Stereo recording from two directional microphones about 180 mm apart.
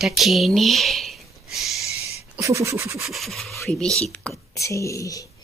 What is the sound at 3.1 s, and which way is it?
Speech, centre (ahead or behind).